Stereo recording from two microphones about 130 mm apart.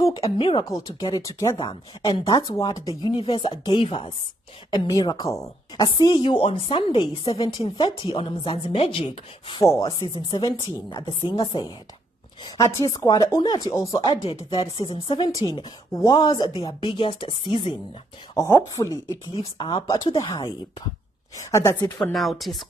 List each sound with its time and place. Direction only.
0.4 s a woman's voice: 40° left (ahead or behind)
0.9 s speech: 30° left (ahead or behind)
1.6 s a woman's voice: 40° left (ahead or behind)
2.2 s a woman's voice: 25° left (ahead or behind); by 4.1 s 40° left (ahead or behind)
4.6 s a woman's voice: 30° left (ahead or behind)
9.6 s speech: 25° left (ahead or behind)
9.8 s a woman's voice: 40° left (ahead or behind)
12.4 s a woman's voice: 25° left (ahead or behind); by 17.7 s 40° left (ahead or behind)
18.3 s speech: 20° left (ahead or behind)
19.3 s a woman's voice: 40° left (ahead or behind); by 22.1 s 15° left (ahead or behind)
22.1 s speech: centre (ahead or behind)